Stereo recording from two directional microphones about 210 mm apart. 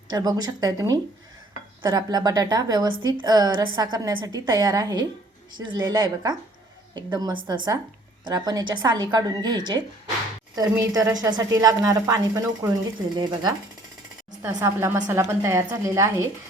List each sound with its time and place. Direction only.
0.1 s a woman's voice: 20° right (ahead or behind)